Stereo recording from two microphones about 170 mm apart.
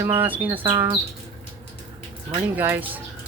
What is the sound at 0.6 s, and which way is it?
Speech, 30° right (ahead or behind).